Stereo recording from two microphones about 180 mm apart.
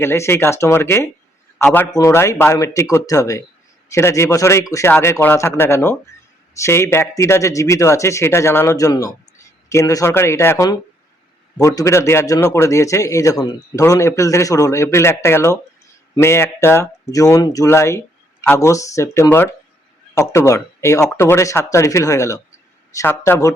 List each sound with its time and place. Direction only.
0.0 s a man's voice: 15° left (ahead or behind)